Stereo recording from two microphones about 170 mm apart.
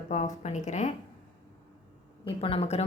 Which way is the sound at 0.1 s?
45° left (ahead or behind).